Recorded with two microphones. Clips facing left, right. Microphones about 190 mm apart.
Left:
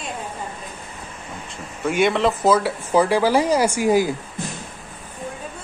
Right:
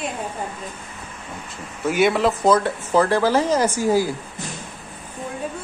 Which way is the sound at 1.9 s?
5° right (ahead or behind).